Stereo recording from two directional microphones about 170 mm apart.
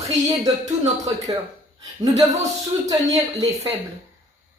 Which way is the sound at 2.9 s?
20° right (ahead or behind).